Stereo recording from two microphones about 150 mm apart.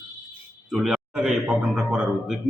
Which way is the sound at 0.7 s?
5° right (ahead or behind).